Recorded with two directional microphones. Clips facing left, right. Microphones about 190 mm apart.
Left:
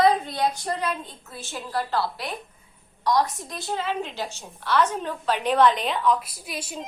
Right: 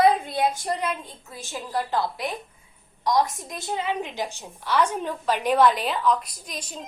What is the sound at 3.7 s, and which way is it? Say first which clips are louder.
A woman's voice: right 1 dB; 15° right (ahead or behind).